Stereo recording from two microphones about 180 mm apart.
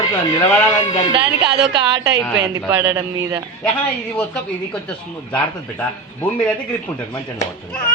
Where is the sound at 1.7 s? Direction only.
25° right (ahead or behind).